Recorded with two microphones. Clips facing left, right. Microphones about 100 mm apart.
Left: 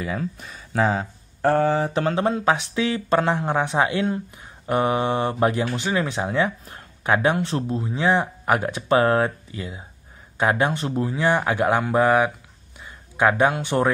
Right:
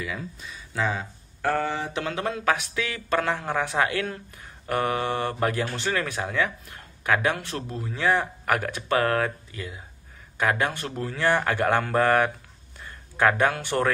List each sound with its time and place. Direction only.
0.2 s speech: 55° left (ahead or behind)
0.8 s speech: 35° left (ahead or behind); by 13.9 s 20° left (ahead or behind)